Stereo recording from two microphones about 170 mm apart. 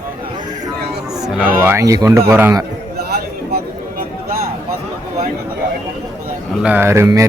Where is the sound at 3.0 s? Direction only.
65° right (ahead or behind).